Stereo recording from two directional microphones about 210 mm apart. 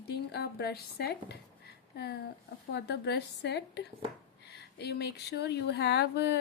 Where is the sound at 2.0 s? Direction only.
50° left (ahead or behind).